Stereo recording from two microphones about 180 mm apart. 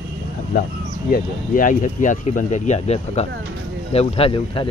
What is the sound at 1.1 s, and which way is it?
Speech, 50° left (ahead or behind).